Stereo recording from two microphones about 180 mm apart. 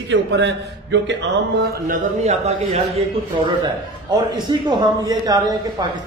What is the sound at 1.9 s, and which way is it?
Speech, 35° right (ahead or behind).